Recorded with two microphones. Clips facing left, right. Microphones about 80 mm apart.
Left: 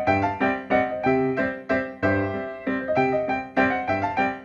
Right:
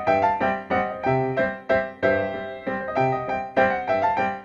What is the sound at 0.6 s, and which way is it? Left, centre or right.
Music, centre.